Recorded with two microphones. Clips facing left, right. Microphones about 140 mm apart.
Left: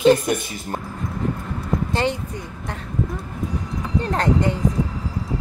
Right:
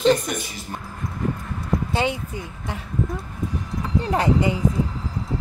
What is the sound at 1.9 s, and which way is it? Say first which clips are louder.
Speech: left 1 dB; 5° right (ahead or behind).